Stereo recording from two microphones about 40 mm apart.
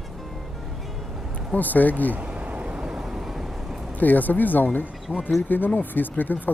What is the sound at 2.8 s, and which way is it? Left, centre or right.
Vehicle, centre.